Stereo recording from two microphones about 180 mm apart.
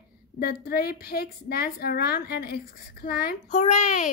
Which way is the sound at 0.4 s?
60° left (ahead or behind).